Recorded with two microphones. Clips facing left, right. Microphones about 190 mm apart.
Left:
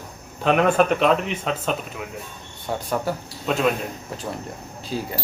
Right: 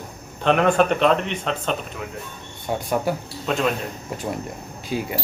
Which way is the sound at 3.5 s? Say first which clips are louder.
Left 1 dB; 5° left (ahead or behind).